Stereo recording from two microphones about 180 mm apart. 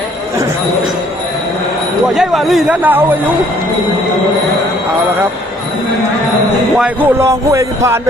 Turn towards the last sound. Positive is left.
turn(degrees=-15)  # may be behind; listen again after turning